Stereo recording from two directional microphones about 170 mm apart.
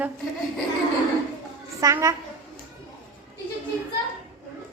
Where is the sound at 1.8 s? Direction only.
20° right (ahead or behind).